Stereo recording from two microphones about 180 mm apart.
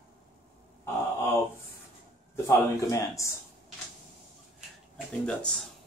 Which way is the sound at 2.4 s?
15° left (ahead or behind).